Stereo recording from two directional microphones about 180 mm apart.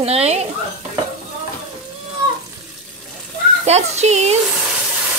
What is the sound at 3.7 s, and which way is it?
Speech, 40° right (ahead or behind).